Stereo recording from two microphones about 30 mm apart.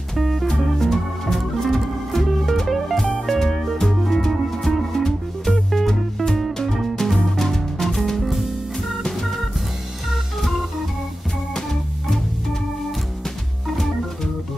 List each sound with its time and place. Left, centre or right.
0.2 s music: centre